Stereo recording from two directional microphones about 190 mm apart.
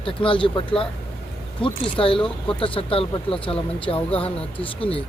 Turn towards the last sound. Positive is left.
turn(degrees=30)  # may be behind; listen again after turning